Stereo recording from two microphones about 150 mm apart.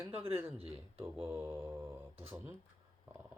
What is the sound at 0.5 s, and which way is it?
Speech, 40° right (ahead or behind).